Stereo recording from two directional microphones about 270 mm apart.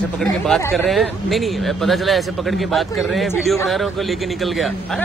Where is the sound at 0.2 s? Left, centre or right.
Centre.